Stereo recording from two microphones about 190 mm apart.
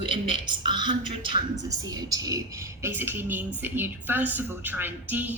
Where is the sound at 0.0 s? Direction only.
25° right (ahead or behind).